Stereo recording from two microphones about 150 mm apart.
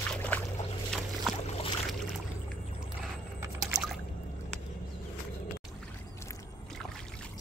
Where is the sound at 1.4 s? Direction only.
45° left (ahead or behind).